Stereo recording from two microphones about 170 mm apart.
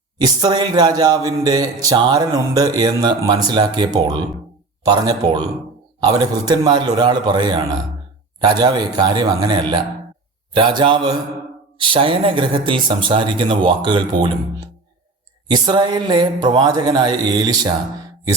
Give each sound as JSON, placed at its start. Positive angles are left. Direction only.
{"t": 0.2, "sound": "speech", "side_deg": -25}
{"t": 15.4, "sound": "speech", "side_deg": -25}